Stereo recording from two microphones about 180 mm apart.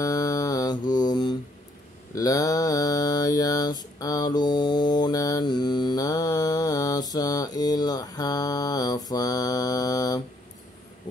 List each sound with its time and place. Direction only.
0.0 s music: 20° left (ahead or behind)
2.1 s mantra: 20° left (ahead or behind)